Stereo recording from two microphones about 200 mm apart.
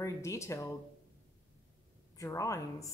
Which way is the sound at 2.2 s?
15° left (ahead or behind).